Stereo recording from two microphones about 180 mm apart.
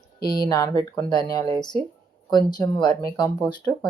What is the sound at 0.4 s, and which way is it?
Speech, 20° left (ahead or behind).